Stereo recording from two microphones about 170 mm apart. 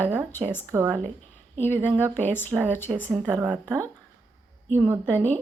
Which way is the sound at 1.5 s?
10° left (ahead or behind).